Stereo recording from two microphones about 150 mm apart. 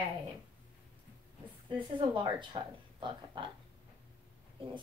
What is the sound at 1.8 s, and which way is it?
Speech, 35° right (ahead or behind).